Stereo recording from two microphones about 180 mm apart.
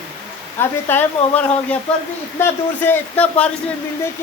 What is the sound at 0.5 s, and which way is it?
Speech, 10° left (ahead or behind).